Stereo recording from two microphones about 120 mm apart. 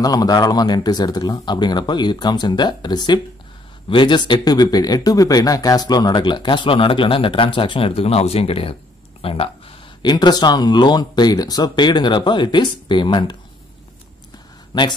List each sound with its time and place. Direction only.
0.0 s speech: 30° left (ahead or behind); by 9.5 s 50° left (ahead or behind)
10.0 s speech: 35° left (ahead or behind)
14.7 s speech: 40° left (ahead or behind)